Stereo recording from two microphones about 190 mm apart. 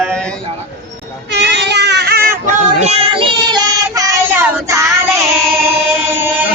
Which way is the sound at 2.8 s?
30° right (ahead or behind).